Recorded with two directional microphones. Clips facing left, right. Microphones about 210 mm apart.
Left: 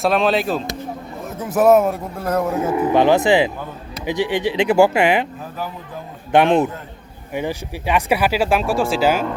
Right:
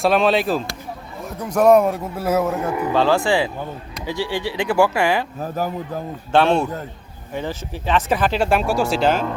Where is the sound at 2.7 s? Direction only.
20° left (ahead or behind).